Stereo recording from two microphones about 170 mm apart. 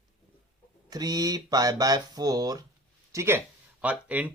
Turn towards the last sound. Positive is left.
turn(degrees=-10)  # may be behind; listen again after turning